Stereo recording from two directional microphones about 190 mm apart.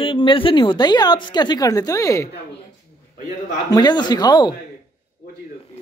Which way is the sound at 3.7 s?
20° left (ahead or behind).